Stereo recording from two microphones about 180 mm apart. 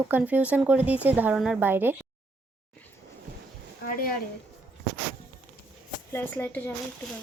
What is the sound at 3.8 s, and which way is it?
Speech, 55° left (ahead or behind).